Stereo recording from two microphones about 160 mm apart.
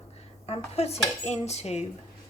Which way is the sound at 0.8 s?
40° left (ahead or behind).